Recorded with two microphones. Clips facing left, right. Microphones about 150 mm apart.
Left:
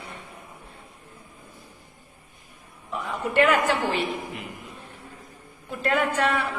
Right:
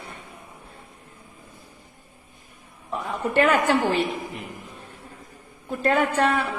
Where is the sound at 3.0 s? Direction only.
35° right (ahead or behind).